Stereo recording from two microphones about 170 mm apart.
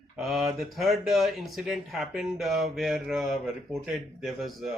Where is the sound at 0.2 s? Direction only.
Centre (ahead or behind).